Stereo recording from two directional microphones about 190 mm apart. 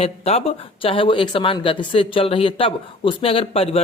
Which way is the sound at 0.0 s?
30° left (ahead or behind).